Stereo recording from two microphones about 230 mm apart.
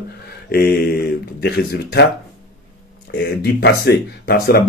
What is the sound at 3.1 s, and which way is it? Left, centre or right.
Speech, left.